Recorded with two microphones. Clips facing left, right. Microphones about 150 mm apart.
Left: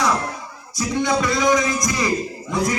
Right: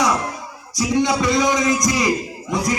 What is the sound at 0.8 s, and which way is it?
A man's voice, 15° right (ahead or behind).